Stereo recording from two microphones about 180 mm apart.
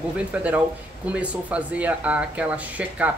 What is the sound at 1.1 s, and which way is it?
Speech, 5° right (ahead or behind).